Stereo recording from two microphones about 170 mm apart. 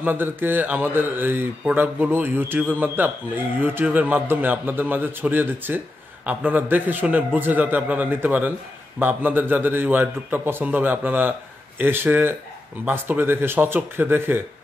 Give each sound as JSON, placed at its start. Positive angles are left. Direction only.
{"t": 0.0, "sound": "speech", "side_deg": -10}